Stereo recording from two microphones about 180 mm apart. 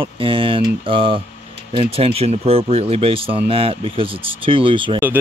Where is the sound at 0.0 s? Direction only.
30° right (ahead or behind).